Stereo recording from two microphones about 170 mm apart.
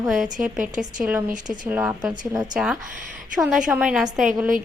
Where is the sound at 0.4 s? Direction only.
5° right (ahead or behind).